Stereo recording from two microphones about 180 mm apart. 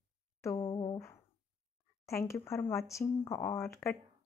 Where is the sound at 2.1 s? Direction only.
15° left (ahead or behind).